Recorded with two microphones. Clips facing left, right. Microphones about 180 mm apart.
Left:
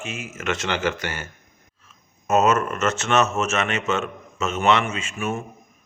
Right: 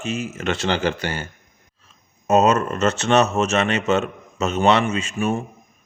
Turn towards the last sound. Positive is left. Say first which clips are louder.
# right 5 dB
turn(degrees=-35)  # may be behind; listen again after turning